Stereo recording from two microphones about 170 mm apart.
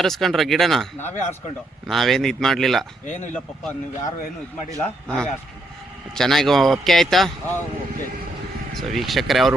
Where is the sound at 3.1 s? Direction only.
45° left (ahead or behind).